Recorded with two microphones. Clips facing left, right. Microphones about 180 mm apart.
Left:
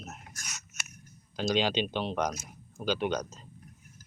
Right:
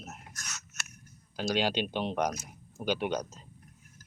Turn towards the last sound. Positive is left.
turn(degrees=-10)  # may be behind; listen again after turning